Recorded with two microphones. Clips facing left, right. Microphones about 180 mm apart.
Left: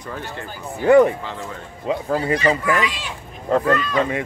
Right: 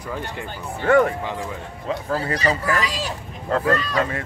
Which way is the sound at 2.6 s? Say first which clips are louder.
Left 2 dB; 35° right (ahead or behind).